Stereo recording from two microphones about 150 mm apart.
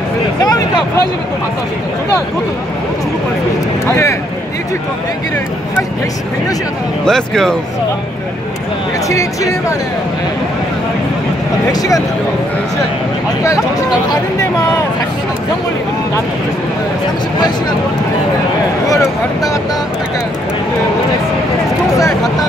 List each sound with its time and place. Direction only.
0.4 s speech: 25° left (ahead or behind)
3.8 s speech: 20° left (ahead or behind)
7.1 s speech: 5° left (ahead or behind)
9.1 s speech: 20° left (ahead or behind)
13.4 s speech: 20° left (ahead or behind)
18.9 s a sound: 25° left (ahead or behind)
21.9 s a sound: 25° left (ahead or behind)